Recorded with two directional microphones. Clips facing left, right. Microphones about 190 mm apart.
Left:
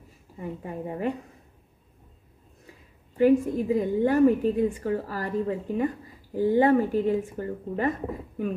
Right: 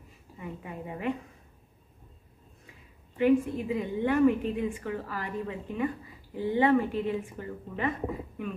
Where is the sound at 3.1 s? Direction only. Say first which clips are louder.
Left 4 dB; 40° left (ahead or behind).